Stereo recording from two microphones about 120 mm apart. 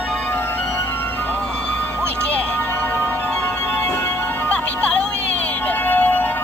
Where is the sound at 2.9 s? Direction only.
15° left (ahead or behind).